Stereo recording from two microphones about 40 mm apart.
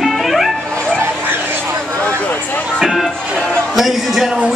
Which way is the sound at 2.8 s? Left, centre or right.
Centre.